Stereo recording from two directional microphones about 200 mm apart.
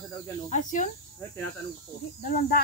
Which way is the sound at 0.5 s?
40° left (ahead or behind).